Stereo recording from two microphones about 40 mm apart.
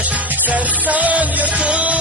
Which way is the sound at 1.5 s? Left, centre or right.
Right.